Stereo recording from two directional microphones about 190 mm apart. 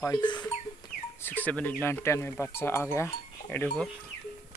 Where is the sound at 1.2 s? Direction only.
10° left (ahead or behind).